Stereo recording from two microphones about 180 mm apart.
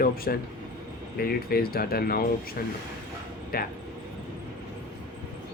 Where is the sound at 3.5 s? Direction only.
55° left (ahead or behind).